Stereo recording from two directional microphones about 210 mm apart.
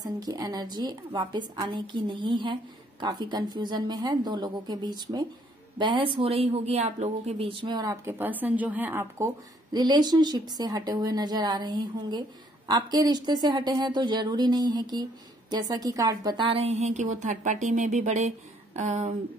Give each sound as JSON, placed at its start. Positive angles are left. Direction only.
{"t": 0.0, "sound": "a woman's voice", "side_deg": -20}